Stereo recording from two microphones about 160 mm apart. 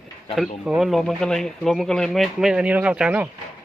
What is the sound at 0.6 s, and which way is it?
Speech, centre (ahead or behind).